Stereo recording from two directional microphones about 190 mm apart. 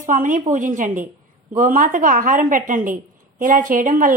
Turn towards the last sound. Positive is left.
turn(degrees=-45)  # may be behind; listen again after turning